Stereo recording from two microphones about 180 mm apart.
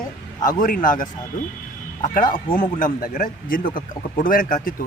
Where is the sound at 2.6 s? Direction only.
50° left (ahead or behind).